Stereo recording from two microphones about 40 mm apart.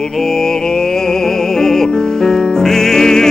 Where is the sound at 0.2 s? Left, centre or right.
Centre.